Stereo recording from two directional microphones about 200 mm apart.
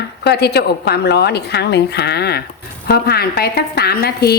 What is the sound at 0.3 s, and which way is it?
A woman's voice, 55° left (ahead or behind).